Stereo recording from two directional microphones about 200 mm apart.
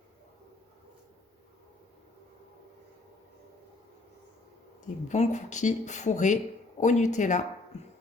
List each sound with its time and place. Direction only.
5.0 s speech: 35° left (ahead or behind)